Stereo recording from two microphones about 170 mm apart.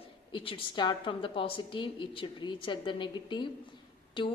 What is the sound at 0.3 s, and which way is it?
A woman's voice, 30° left (ahead or behind).